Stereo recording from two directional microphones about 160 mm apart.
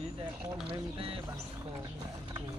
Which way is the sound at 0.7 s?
35° right (ahead or behind).